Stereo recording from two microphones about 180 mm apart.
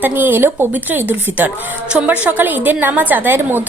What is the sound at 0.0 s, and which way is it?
A woman's voice, 10° right (ahead or behind).